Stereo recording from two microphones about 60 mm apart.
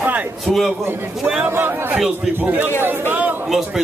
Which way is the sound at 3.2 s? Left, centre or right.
Right.